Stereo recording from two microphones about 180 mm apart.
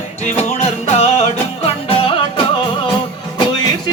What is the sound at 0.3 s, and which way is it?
Music, 35° left (ahead or behind).